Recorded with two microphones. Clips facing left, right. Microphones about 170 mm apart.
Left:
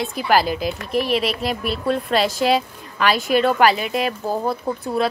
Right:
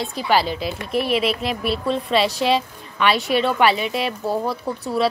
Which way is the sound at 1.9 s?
50° left (ahead or behind).